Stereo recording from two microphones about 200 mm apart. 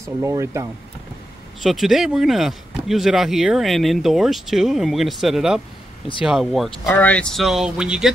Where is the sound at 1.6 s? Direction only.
Centre (ahead or behind).